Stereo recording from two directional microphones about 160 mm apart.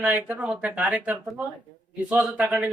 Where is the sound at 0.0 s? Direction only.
10° right (ahead or behind).